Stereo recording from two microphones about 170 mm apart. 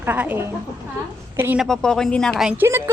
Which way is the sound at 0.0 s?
10° right (ahead or behind).